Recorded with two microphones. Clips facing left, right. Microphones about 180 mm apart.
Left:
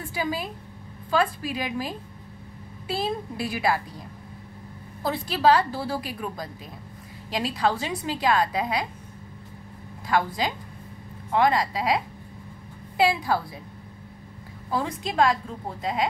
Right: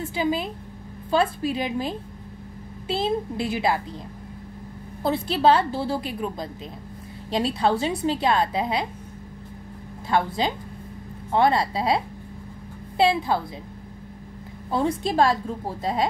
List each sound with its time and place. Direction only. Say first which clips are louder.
0.1 s a woman's voice: right 3 dB; 25° right (ahead or behind)
5.0 s a woman's voice: right 2 dB; 25° right (ahead or behind)
10.0 s a woman's voice: right 2 dB; 25° right (ahead or behind)
14.7 s a woman's voice: right 5 dB; 30° right (ahead or behind)